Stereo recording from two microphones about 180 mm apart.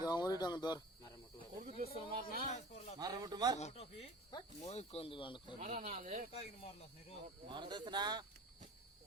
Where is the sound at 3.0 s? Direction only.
20° right (ahead or behind).